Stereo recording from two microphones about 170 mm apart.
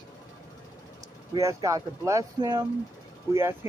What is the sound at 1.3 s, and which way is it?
Speech, 20° right (ahead or behind).